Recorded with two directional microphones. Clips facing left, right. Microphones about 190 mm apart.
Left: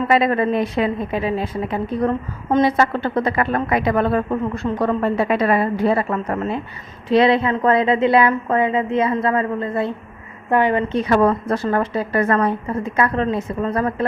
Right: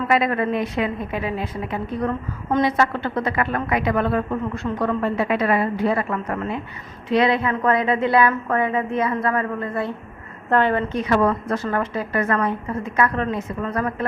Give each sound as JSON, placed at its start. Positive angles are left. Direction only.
{"t": 0.1, "sound": "a woman's voice", "side_deg": 30}
{"t": 10.9, "sound": "a woman's voice", "side_deg": 35}